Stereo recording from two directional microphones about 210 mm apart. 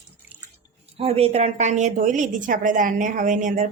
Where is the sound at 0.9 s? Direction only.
30° right (ahead or behind).